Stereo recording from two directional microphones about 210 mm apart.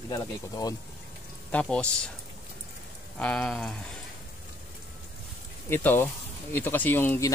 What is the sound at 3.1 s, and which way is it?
Speech, 5° left (ahead or behind).